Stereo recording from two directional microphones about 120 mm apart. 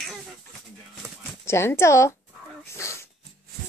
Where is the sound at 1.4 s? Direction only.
20° left (ahead or behind).